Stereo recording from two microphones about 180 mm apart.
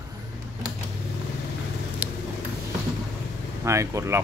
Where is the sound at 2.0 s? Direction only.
10° right (ahead or behind).